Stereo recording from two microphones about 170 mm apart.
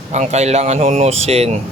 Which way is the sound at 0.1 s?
40° right (ahead or behind).